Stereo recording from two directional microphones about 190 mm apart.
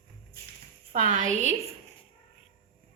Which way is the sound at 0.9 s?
45° right (ahead or behind).